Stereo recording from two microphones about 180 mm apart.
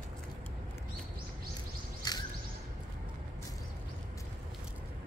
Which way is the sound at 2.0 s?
20° left (ahead or behind).